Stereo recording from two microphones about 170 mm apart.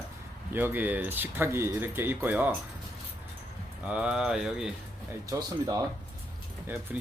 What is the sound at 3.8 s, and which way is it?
Speech, 5° right (ahead or behind).